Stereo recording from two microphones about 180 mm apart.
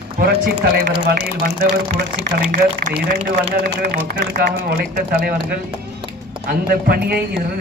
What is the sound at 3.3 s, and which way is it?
A man's voice, 60° right (ahead or behind).